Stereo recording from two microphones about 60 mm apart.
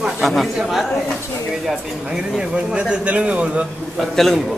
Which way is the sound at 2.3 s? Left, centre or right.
Centre.